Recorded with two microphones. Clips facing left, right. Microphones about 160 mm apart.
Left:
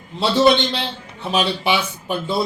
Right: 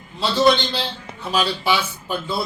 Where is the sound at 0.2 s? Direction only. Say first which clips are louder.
Left 2 dB; 25° left (ahead or behind).